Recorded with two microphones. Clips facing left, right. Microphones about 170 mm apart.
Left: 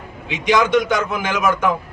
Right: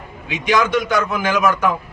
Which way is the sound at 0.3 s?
20° left (ahead or behind).